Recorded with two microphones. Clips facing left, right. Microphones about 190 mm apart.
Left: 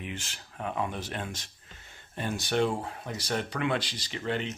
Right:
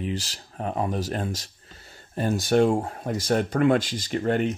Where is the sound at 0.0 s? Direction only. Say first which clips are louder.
Right 9 dB; 35° right (ahead or behind).